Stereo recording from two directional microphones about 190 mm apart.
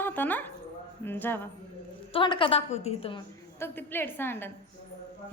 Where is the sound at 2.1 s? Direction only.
25° left (ahead or behind).